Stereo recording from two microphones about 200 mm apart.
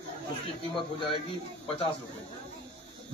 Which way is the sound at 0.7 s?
25° left (ahead or behind).